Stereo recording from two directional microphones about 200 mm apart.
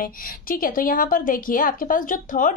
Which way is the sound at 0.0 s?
45° left (ahead or behind).